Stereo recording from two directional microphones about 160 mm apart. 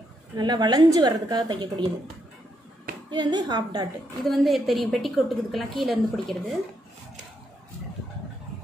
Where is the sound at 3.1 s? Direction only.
25° right (ahead or behind).